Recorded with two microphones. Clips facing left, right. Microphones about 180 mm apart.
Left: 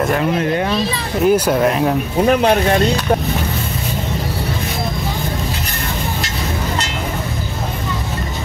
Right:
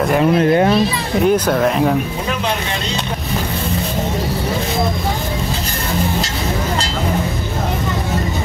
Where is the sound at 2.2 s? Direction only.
50° left (ahead or behind).